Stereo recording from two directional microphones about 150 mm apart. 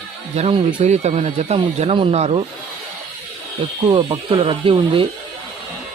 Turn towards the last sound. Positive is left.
turn(degrees=-35)  # may be behind; listen again after turning